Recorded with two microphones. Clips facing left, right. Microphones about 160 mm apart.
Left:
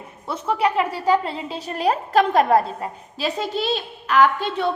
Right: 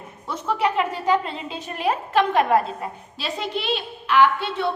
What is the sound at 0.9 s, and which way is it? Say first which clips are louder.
A woman's voice: left 2 dB; 35° left (ahead or behind).